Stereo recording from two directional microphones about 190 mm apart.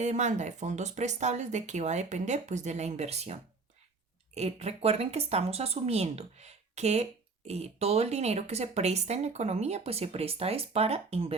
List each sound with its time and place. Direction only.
0.0 s speech: 40° right (ahead or behind)
4.4 s speech: 35° right (ahead or behind)